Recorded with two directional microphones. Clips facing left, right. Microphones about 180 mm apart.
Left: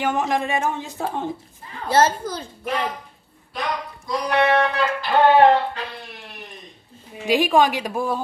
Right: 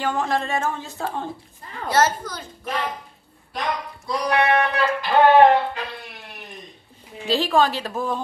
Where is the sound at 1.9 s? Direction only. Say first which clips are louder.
Left 2 dB; 30° left (ahead or behind).